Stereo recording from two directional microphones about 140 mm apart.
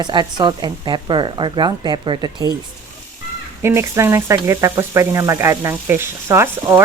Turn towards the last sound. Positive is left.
turn(degrees=-20)  # may be behind; listen again after turning